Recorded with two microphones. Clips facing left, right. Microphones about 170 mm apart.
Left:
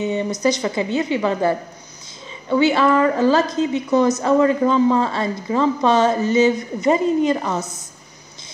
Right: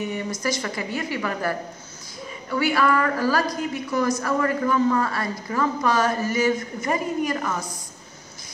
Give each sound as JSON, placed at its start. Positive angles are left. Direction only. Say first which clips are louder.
{"t": 0.0, "sound": "a woman's voice", "louder": "left 7 dB", "side_deg": 20}